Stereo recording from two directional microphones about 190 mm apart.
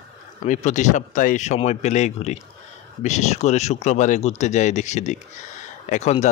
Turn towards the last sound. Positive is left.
turn(degrees=35)  # may be behind; listen again after turning